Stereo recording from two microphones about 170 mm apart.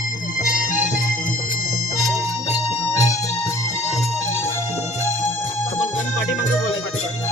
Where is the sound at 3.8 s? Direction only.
40° left (ahead or behind).